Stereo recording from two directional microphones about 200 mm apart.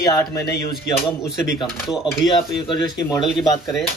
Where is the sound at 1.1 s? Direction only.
5° right (ahead or behind).